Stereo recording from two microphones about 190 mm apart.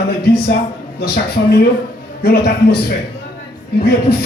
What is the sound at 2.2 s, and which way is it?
Speech, 60° left (ahead or behind).